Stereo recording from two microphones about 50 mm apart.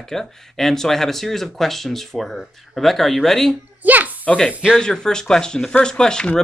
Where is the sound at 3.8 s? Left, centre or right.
Right.